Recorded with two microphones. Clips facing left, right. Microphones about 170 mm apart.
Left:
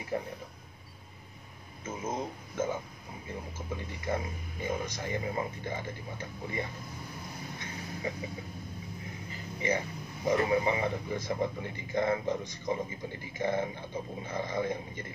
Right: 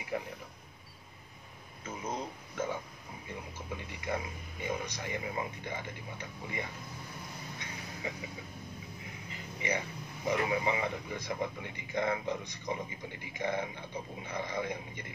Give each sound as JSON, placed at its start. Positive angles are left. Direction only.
{"t": 1.9, "sound": "speech", "side_deg": 25}
{"t": 3.3, "sound": "a man's voice", "side_deg": 35}
{"t": 9.6, "sound": "a man's voice", "side_deg": 35}